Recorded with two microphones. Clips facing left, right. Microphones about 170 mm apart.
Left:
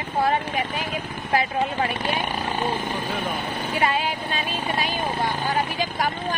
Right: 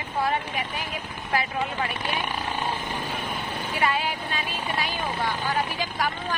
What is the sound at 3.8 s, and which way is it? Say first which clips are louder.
Speech: left 2 dB; 20° left (ahead or behind).